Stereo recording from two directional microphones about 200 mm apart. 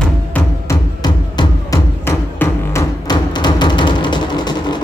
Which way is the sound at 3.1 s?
20° left (ahead or behind).